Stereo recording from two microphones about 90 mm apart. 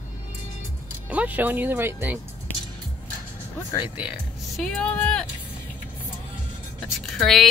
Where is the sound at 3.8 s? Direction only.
15° right (ahead or behind).